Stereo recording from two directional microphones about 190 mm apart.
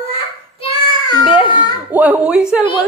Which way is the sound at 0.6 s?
25° left (ahead or behind).